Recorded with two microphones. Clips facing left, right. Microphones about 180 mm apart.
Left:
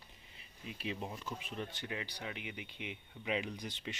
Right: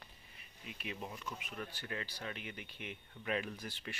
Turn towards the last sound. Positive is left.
turn(degrees=20)  # may be behind; listen again after turning